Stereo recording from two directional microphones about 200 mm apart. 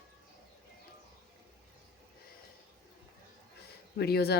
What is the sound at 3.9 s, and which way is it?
Speech, 50° left (ahead or behind).